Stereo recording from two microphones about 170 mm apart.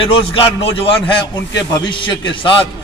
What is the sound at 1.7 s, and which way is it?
Speech, 30° left (ahead or behind).